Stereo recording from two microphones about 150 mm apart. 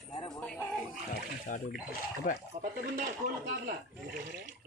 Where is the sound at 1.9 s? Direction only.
65° left (ahead or behind).